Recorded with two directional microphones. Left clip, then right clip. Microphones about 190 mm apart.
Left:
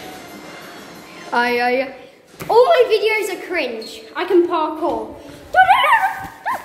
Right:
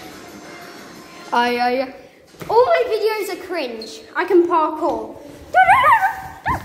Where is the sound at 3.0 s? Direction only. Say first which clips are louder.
Left 2 dB; 5° right (ahead or behind).